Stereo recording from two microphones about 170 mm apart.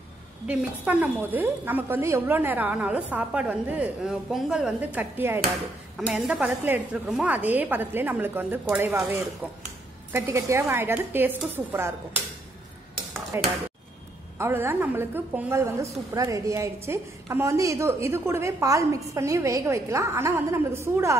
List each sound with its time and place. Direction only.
0.5 s a woman's voice: 10° right (ahead or behind)
13.3 s a woman's voice: 15° right (ahead or behind)